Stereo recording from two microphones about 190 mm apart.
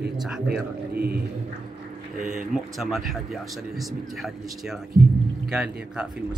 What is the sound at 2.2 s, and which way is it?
Speech, 40° right (ahead or behind).